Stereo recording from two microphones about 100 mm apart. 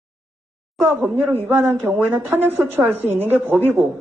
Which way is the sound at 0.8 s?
20° right (ahead or behind).